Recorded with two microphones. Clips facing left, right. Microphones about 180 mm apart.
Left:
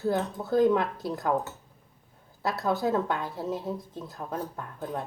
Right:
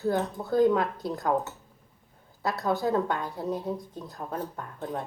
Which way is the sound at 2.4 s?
Centre (ahead or behind).